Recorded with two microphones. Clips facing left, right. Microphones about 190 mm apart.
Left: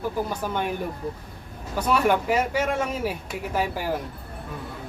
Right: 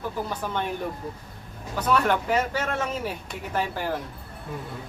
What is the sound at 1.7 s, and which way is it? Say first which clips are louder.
Speech: left 2 dB; 10° left (ahead or behind).